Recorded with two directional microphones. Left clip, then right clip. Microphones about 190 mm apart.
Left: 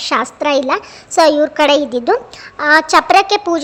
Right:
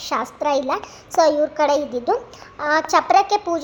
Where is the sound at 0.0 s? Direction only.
25° left (ahead or behind).